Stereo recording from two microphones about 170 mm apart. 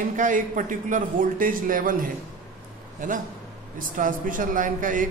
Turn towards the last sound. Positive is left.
turn(degrees=-50)  # may be behind; listen again after turning